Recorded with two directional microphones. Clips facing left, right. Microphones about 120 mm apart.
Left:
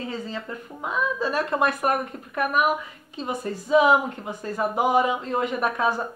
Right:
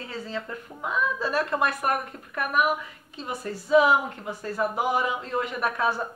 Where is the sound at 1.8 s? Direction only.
15° left (ahead or behind).